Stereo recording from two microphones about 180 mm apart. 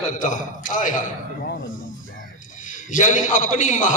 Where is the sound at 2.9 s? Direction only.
45° left (ahead or behind).